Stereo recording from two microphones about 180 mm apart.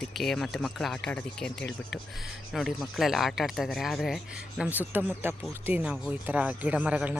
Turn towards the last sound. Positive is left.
turn(degrees=-10)  # may be behind; listen again after turning